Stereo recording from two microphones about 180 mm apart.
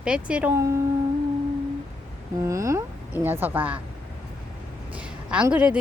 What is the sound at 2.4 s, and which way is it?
A woman's voice, 15° right (ahead or behind).